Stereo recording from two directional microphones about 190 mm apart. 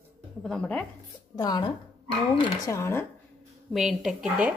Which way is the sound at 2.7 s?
10° left (ahead or behind).